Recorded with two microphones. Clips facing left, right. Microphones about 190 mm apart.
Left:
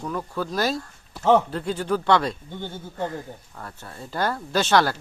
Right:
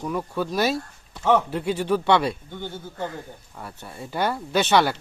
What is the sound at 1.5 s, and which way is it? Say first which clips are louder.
Speech: right 2 dB; 25° right (ahead or behind).